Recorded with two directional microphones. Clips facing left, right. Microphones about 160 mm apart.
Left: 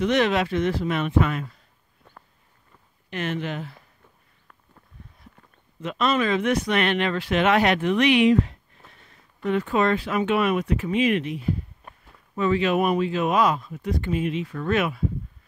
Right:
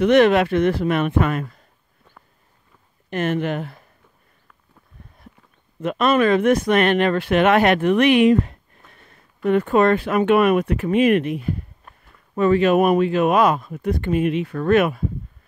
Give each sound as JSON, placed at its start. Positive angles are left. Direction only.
{"t": 0.0, "sound": "speech", "side_deg": -55}
{"t": 3.1, "sound": "speech", "side_deg": -50}
{"t": 5.8, "sound": "speech", "side_deg": -55}